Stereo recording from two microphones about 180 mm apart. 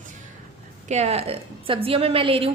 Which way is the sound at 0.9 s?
35° right (ahead or behind).